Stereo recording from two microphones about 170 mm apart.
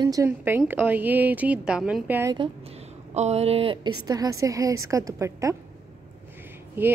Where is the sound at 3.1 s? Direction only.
40° right (ahead or behind); by 5.5 s 20° right (ahead or behind).